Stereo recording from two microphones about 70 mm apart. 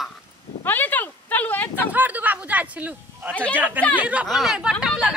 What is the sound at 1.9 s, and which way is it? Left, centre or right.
A man's voice, right.